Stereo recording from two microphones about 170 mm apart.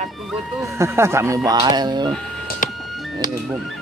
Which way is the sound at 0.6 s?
15° right (ahead or behind).